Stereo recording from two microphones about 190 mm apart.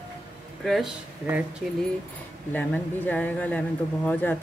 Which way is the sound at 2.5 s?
10° left (ahead or behind).